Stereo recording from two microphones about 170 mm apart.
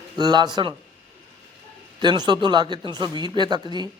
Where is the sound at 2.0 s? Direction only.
25° right (ahead or behind).